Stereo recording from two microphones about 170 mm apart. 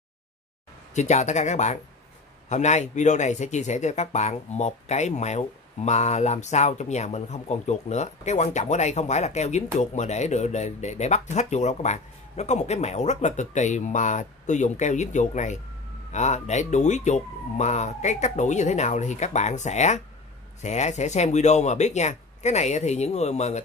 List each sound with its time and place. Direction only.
0.9 s speech: 45° left (ahead or behind)